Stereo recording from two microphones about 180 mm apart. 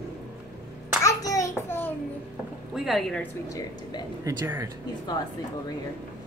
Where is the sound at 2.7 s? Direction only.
Centre (ahead or behind).